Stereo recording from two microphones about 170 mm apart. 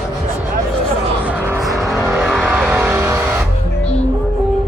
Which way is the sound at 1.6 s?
Centre (ahead or behind).